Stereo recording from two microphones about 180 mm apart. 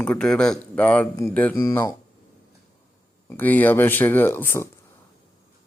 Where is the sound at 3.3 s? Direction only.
10° left (ahead or behind).